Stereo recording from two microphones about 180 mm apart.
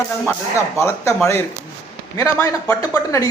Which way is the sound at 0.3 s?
15° left (ahead or behind).